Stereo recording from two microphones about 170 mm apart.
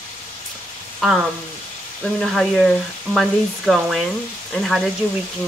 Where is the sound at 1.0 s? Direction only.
Centre (ahead or behind).